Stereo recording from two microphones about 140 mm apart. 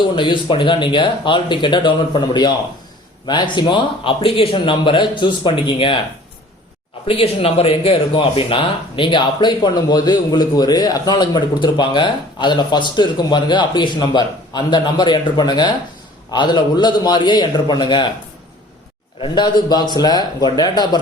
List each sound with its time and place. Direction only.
0.0 s speech: 35° left (ahead or behind)
7.1 s speech: 45° left (ahead or behind)
19.2 s a man's voice: 30° left (ahead or behind)